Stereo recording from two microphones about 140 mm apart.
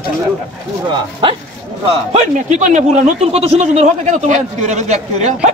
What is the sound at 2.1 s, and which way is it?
Speech, 60° right (ahead or behind).